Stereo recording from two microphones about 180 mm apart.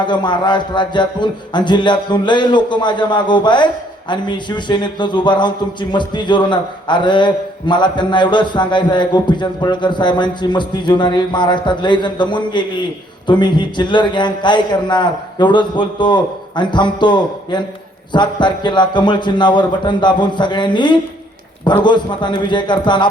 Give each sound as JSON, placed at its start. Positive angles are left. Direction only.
{"t": 0.0, "sound": "a man's voice", "side_deg": 25}